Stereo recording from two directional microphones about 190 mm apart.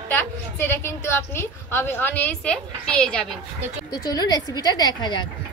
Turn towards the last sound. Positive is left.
turn(degrees=25)  # may be behind; listen again after turning